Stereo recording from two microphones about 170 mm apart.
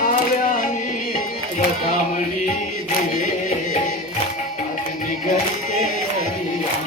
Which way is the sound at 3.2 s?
50° left (ahead or behind).